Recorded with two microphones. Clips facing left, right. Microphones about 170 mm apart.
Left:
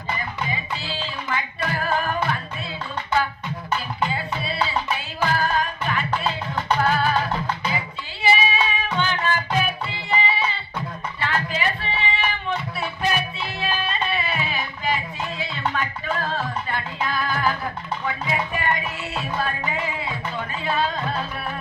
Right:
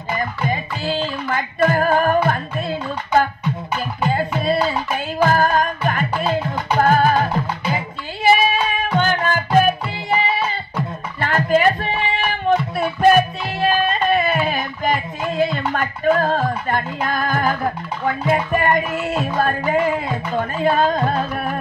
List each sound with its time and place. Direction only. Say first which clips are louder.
0.2 s music: right 6 dB; 45° right (ahead or behind)
11.1 s a sound: right 10 dB; 50° right (ahead or behind)
18.0 s music: right 8 dB; 50° right (ahead or behind)